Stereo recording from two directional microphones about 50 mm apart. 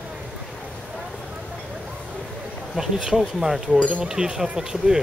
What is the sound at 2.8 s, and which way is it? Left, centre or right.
Speech, centre.